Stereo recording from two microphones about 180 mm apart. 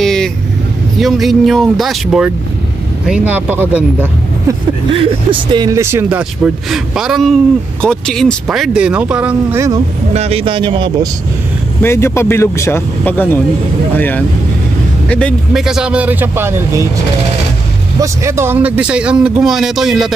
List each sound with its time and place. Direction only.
0.0 s vehicle: 5° left (ahead or behind)
0.9 s speech: centre (ahead or behind)
4.9 s speech: 30° right (ahead or behind); by 9.7 s 10° right (ahead or behind)
10.1 s speech: 35° right (ahead or behind)
11.8 s speech: 15° left (ahead or behind); by 16.8 s 15° right (ahead or behind)
18.0 s speech: 15° right (ahead or behind)